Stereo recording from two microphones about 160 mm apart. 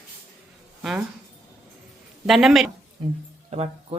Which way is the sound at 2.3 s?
Centre (ahead or behind).